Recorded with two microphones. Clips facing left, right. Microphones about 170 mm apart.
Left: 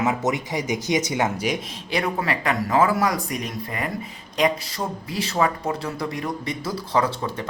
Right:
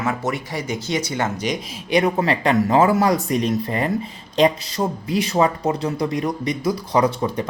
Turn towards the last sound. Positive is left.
turn(degrees=-15)  # may be behind; listen again after turning